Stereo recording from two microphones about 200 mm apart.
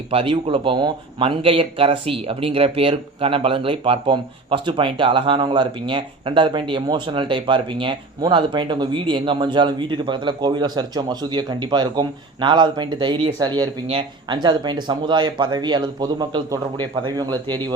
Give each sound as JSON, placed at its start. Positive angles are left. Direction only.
{"t": 0.1, "sound": "a man's voice", "side_deg": -25}